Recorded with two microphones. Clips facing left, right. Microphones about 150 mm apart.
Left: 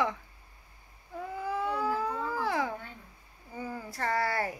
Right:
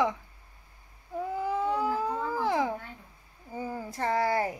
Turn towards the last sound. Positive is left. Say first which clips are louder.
# right 3 dB
turn(degrees=-20)  # may be behind; listen again after turning